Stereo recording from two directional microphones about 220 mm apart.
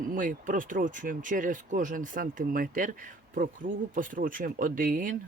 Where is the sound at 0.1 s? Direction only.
35° right (ahead or behind).